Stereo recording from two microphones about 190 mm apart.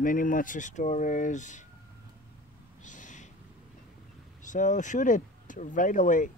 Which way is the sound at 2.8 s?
40° left (ahead or behind).